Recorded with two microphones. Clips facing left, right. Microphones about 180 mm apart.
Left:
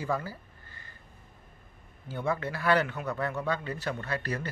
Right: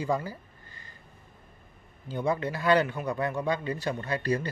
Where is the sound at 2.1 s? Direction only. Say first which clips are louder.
Right 3 dB; 15° right (ahead or behind).